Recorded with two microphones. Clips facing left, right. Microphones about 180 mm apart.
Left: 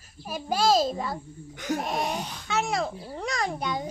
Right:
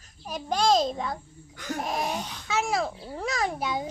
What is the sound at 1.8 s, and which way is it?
A child's voice, centre (ahead or behind).